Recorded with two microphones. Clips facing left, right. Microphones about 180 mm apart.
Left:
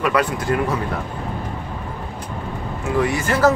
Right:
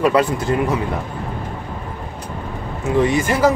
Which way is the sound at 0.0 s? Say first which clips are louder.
Right 4 dB; 25° right (ahead or behind).